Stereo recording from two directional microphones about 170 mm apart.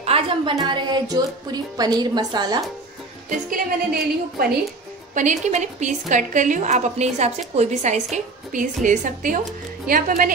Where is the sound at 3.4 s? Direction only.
60° right (ahead or behind).